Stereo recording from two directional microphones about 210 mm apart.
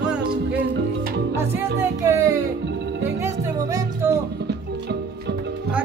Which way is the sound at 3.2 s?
15° right (ahead or behind).